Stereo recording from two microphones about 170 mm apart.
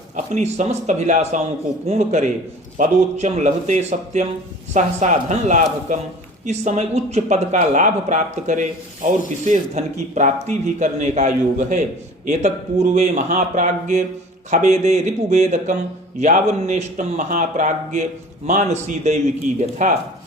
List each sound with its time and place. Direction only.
0.3 s speech: 40° right (ahead or behind)